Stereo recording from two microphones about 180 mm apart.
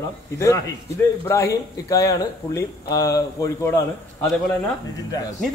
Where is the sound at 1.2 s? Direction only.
15° left (ahead or behind).